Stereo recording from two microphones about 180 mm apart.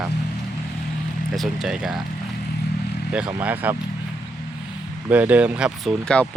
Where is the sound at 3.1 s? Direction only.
5° right (ahead or behind).